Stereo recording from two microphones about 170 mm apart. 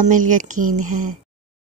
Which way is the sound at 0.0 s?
50° right (ahead or behind).